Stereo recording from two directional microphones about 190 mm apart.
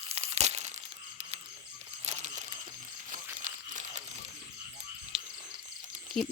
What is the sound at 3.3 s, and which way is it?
Tearing, 40° right (ahead or behind).